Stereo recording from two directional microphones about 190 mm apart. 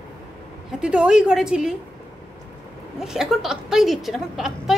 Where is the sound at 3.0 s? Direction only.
5° right (ahead or behind).